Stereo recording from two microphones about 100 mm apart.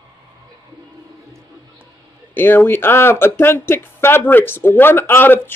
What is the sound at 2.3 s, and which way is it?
Speech, 20° left (ahead or behind).